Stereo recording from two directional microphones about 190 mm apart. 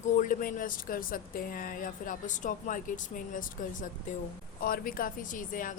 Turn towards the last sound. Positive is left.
turn(degrees=45)  # may be behind; listen again after turning